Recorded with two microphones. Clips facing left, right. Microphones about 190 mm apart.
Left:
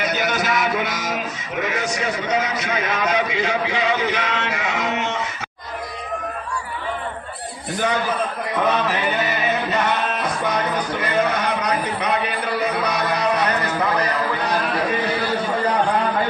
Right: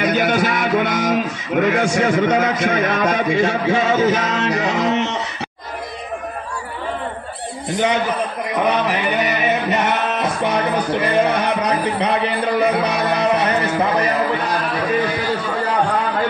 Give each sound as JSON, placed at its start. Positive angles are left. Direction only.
{"t": 0.0, "sound": "music", "side_deg": -50}
{"t": 7.7, "sound": "a man's voice", "side_deg": -20}
{"t": 8.5, "sound": "a sound", "side_deg": -15}
{"t": 12.7, "sound": "music", "side_deg": -25}